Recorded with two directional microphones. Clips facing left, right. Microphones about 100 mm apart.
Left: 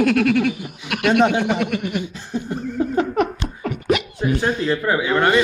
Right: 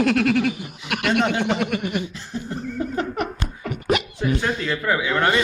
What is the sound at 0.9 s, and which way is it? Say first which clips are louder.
Speech: left 4 dB; 15° left (ahead or behind).